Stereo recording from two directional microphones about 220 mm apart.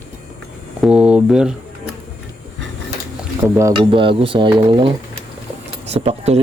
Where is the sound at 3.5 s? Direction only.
15° right (ahead or behind).